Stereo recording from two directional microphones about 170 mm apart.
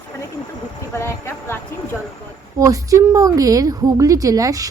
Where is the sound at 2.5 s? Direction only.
20° right (ahead or behind).